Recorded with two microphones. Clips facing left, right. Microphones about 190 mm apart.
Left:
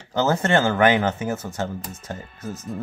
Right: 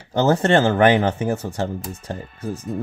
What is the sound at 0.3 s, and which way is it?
Speech, 35° right (ahead or behind).